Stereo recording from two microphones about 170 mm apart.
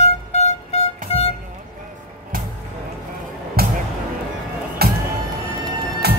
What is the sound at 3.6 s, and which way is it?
Music, 65° right (ahead or behind).